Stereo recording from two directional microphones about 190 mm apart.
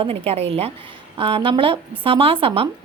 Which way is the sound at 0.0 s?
30° right (ahead or behind).